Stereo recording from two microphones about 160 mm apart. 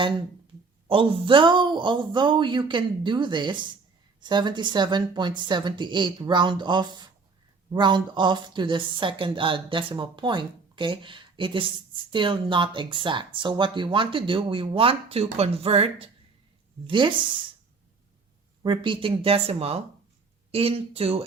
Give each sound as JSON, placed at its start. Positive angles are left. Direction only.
{"t": 0.9, "sound": "a woman's voice", "side_deg": -35}
{"t": 18.6, "sound": "speech", "side_deg": -30}